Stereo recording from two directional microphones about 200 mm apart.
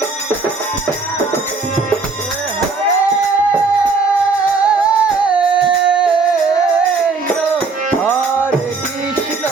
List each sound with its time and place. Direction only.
4.6 s music: 5° right (ahead or behind)